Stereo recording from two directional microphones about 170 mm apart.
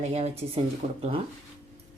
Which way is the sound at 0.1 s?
40° right (ahead or behind).